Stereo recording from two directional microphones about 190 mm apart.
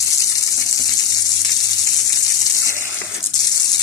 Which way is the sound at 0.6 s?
20° left (ahead or behind).